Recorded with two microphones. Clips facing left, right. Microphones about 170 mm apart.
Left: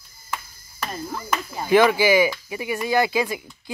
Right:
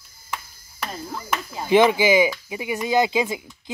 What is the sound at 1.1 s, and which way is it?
Speech, centre (ahead or behind).